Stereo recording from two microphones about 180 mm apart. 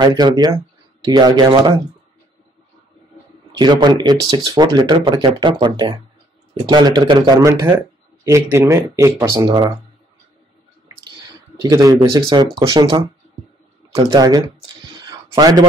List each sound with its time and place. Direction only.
0.0 s speech: 20° right (ahead or behind)
3.5 s speech: 25° right (ahead or behind)
11.6 s speech: 20° right (ahead or behind)
14.0 s speech: 20° right (ahead or behind)
14.9 s a sound: 20° right (ahead or behind)